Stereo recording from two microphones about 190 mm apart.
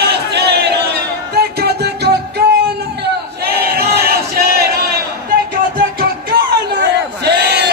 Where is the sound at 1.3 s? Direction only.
55° right (ahead or behind).